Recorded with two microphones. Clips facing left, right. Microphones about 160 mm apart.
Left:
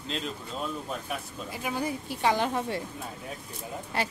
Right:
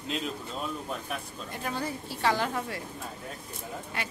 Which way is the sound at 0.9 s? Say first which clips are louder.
Left 1 dB; 5° left (ahead or behind).